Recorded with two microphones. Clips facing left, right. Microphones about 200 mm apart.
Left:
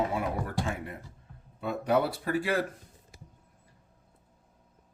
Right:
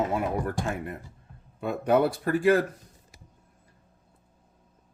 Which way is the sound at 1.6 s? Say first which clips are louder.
Right 4 dB; 50° right (ahead or behind).